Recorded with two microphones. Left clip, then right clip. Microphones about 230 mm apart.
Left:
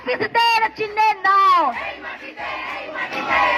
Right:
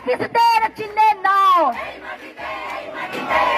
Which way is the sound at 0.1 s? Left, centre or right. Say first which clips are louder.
Right 2 dB; right.